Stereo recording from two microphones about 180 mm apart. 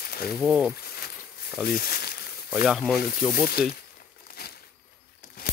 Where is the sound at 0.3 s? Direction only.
5° right (ahead or behind).